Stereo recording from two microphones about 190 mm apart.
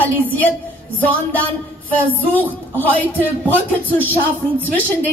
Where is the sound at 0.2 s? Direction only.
10° left (ahead or behind).